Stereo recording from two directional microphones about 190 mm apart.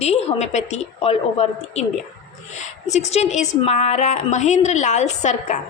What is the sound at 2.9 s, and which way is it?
A woman's voice, 35° left (ahead or behind).